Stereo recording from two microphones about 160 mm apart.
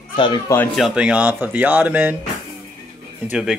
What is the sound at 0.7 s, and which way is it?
Speech, 5° right (ahead or behind).